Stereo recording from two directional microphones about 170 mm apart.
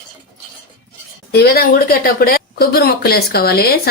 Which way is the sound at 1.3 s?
70° left (ahead or behind).